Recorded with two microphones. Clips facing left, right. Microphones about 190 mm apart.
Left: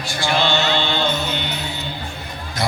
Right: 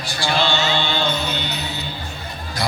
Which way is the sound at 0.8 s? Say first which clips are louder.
Left 1 dB; 15° left (ahead or behind).